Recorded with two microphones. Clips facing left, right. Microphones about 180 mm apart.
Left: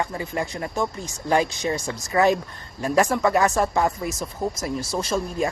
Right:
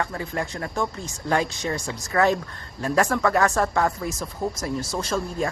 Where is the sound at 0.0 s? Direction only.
15° left (ahead or behind).